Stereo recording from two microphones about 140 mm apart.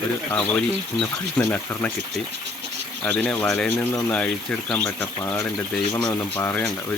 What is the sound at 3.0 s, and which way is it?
Speech, 10° left (ahead or behind).